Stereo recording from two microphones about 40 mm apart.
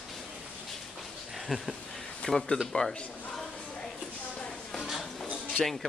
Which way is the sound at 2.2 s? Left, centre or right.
Left.